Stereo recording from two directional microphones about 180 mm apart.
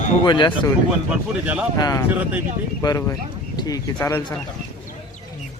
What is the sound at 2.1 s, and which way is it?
Speech, 10° right (ahead or behind).